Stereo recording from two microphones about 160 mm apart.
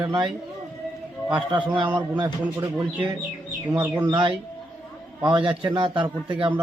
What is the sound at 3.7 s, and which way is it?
Speech, 10° right (ahead or behind).